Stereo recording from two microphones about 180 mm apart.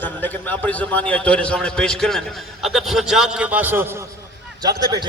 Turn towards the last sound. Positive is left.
turn(degrees=-20)  # may be behind; listen again after turning